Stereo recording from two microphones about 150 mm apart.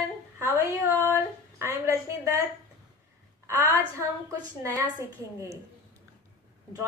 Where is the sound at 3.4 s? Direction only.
25° right (ahead or behind).